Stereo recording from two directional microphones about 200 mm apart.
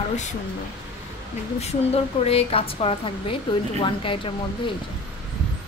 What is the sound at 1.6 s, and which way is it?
Speech, 30° left (ahead or behind).